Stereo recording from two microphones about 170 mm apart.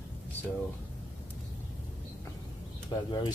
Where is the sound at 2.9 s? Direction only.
25° left (ahead or behind).